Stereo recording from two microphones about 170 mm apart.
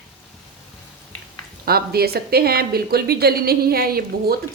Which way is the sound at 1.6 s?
65° right (ahead or behind).